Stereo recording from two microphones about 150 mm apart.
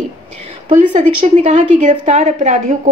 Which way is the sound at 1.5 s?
50° right (ahead or behind).